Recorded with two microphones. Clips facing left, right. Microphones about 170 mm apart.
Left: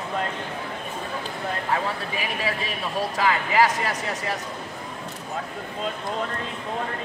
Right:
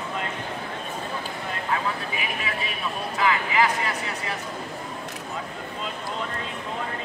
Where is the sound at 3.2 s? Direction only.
40° left (ahead or behind).